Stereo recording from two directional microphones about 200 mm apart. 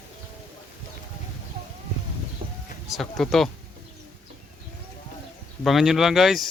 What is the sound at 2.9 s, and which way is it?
Speech, centre (ahead or behind).